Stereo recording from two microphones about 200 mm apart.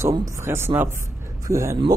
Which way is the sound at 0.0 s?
15° right (ahead or behind).